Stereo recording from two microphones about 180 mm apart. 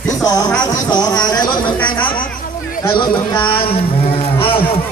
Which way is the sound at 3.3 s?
30° left (ahead or behind).